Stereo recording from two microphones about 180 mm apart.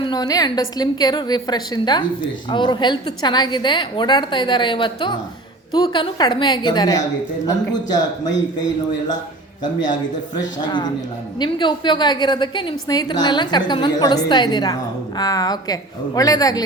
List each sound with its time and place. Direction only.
0.0 s a woman's voice: 20° left (ahead or behind)
11.3 s a woman's voice: 25° left (ahead or behind)